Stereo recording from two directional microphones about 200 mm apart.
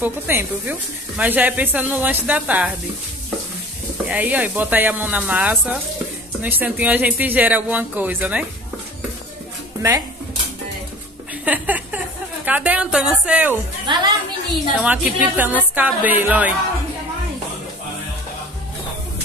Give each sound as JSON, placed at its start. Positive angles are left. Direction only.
{"t": 0.0, "sound": "a woman's voice", "side_deg": -10}
{"t": 4.1, "sound": "a woman's voice", "side_deg": -10}
{"t": 9.8, "sound": "speech", "side_deg": -15}
{"t": 11.4, "sound": "a woman's voice", "side_deg": -10}
{"t": 13.9, "sound": "a woman's voice", "side_deg": -25}
{"t": 14.8, "sound": "a woman's voice", "side_deg": -5}